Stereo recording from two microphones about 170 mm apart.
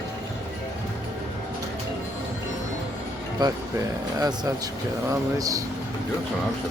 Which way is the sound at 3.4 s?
25° right (ahead or behind).